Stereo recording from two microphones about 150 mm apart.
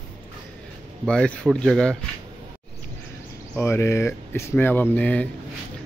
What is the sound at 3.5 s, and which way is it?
Speech, 15° left (ahead or behind).